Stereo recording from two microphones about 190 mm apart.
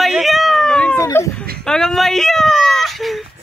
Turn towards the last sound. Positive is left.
turn(degrees=0)  # may be behind; listen again after turning